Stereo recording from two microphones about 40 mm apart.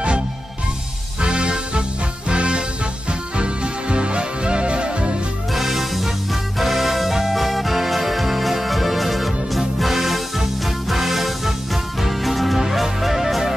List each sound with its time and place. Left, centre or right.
1.2 s music: right
5.5 s music: centre